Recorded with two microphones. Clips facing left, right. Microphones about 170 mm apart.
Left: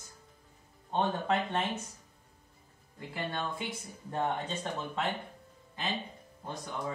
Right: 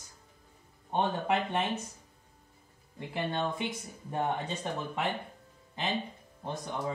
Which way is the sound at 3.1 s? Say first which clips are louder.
Right 4 dB; 20° right (ahead or behind).